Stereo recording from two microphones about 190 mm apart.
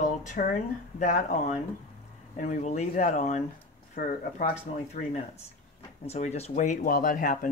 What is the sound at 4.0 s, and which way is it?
Speech, 50° left (ahead or behind).